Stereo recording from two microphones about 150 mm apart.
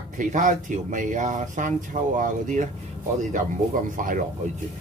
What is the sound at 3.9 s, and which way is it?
Speech, 65° right (ahead or behind).